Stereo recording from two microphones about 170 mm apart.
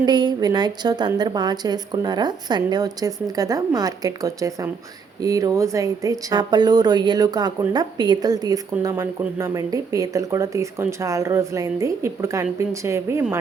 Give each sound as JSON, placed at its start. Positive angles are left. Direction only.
{"t": 0.0, "sound": "a woman's voice", "side_deg": -25}